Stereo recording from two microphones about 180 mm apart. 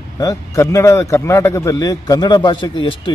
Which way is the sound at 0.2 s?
20° left (ahead or behind).